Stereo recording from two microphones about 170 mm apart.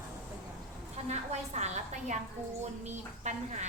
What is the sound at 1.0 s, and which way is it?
A woman's voice, 40° right (ahead or behind).